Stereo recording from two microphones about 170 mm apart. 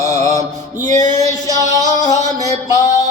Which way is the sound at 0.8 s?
45° right (ahead or behind).